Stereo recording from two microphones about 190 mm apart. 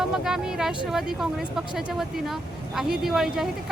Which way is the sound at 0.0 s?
Centre (ahead or behind).